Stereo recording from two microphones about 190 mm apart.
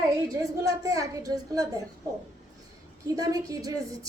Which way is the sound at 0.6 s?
15° right (ahead or behind).